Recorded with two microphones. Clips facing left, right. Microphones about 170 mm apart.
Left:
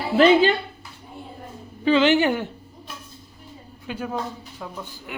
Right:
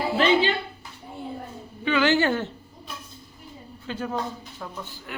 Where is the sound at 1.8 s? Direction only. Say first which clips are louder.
Left 5 dB; 30° left (ahead or behind).